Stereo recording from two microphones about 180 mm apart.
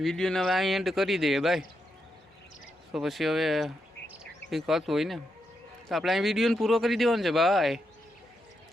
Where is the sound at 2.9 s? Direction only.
Centre (ahead or behind).